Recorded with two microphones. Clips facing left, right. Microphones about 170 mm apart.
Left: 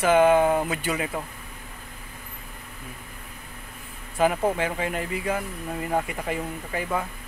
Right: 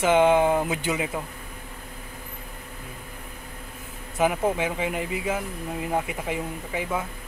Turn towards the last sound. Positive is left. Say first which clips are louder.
# even
turn(degrees=-5)  # may be behind; listen again after turning